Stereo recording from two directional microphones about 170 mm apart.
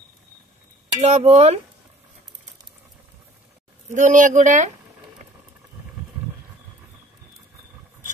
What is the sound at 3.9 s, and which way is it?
Speech, 50° right (ahead or behind).